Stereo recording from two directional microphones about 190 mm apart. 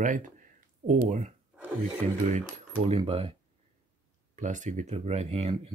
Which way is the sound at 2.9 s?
30° right (ahead or behind).